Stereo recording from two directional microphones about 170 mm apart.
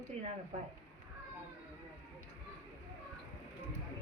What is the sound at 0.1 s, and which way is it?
Speech, 35° right (ahead or behind).